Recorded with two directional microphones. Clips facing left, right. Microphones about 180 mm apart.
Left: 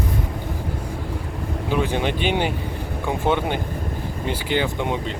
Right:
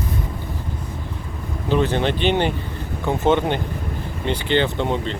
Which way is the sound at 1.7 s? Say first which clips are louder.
Right 3 dB; 10° left (ahead or behind).